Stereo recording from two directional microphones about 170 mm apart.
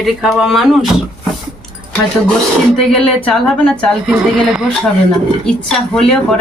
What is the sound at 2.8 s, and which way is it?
Speech, 5° left (ahead or behind).